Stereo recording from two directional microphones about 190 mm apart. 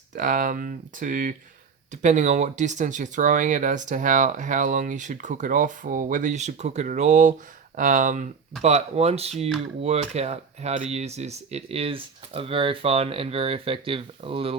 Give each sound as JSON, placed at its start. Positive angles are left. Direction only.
{"t": 0.2, "sound": "speech", "side_deg": -45}